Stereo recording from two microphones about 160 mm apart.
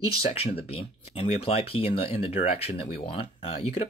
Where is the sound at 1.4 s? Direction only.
35° left (ahead or behind).